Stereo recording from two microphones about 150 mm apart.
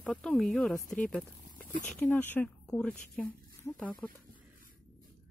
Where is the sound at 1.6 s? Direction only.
70° left (ahead or behind).